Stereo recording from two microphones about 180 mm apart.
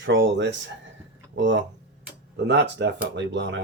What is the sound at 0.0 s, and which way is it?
Speech, 90° right.